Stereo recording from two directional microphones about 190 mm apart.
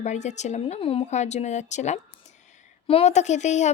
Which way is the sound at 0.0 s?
40° left (ahead or behind).